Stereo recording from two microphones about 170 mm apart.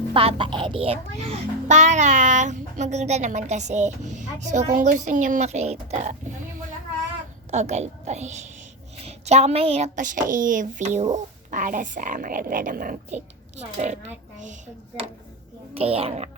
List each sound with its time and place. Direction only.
0.1 s a child's voice: 35° right (ahead or behind)
7.5 s a woman's voice: 40° right (ahead or behind)
13.7 s a child's voice: 45° right (ahead or behind)
15.7 s a woman's voice: 35° right (ahead or behind)